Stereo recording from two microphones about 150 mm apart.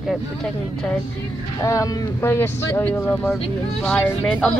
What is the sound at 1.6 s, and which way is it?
Speech, 20° left (ahead or behind).